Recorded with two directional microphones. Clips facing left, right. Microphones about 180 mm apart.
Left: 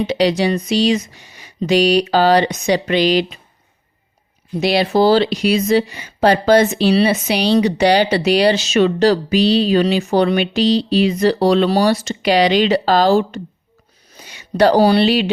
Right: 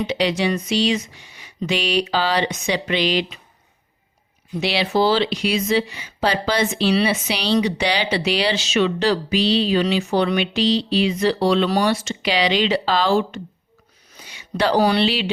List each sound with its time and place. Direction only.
0.0 s speech: 40° left (ahead or behind)
4.6 s speech: 45° left (ahead or behind)
14.1 s a sound: 45° left (ahead or behind)
15.0 s speech: 50° left (ahead or behind)